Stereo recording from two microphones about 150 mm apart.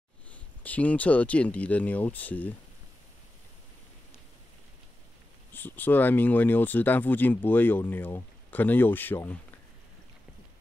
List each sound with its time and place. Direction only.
0.3 s speech: 10° left (ahead or behind)
5.5 s speech: 15° left (ahead or behind)